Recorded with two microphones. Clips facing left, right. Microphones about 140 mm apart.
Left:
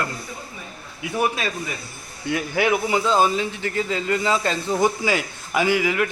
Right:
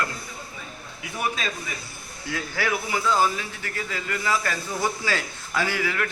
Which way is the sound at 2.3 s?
20° left (ahead or behind).